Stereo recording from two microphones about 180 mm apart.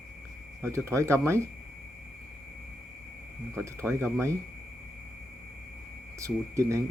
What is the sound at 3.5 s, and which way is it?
Speech, 15° right (ahead or behind).